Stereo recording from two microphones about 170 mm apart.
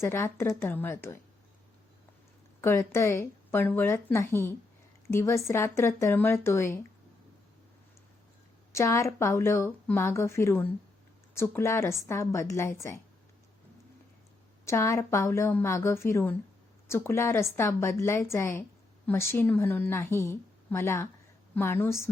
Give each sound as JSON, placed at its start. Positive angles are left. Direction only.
{"t": 0.0, "sound": "a woman's voice", "side_deg": 15}
{"t": 2.6, "sound": "a woman's voice", "side_deg": 15}
{"t": 8.7, "sound": "a woman's voice", "side_deg": 15}
{"t": 14.7, "sound": "a woman's voice", "side_deg": 15}